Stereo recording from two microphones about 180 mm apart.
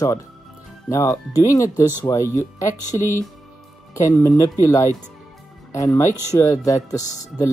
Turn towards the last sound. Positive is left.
turn(degrees=20)  # may be behind; listen again after turning